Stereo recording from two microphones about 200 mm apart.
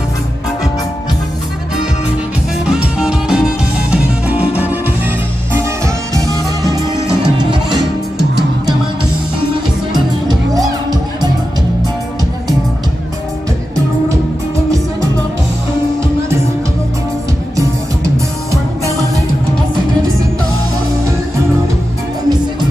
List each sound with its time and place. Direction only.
3.0 s music: 5° right (ahead or behind); by 7.8 s 20° right (ahead or behind)
9.9 s music: 20° right (ahead or behind)